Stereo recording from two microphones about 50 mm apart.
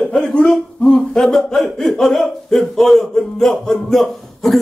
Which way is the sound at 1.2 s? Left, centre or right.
Centre.